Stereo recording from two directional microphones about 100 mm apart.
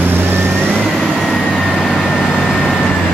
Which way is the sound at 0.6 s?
10° left (ahead or behind).